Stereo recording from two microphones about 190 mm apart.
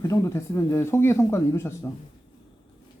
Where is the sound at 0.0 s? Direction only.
15° left (ahead or behind).